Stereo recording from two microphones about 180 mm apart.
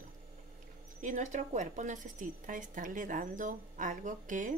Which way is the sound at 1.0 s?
45° right (ahead or behind).